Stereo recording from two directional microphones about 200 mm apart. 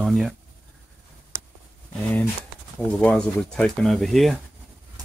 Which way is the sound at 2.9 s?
5° left (ahead or behind).